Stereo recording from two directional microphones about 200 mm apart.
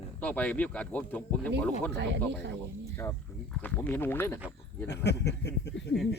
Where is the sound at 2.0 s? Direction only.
60° right (ahead or behind).